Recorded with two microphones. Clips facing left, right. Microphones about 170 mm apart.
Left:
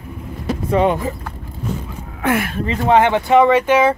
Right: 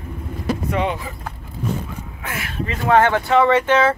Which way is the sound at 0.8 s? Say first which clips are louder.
Left 6 dB; 45° left (ahead or behind).